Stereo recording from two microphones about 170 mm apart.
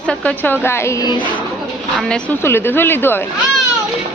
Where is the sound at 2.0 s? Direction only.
10° left (ahead or behind).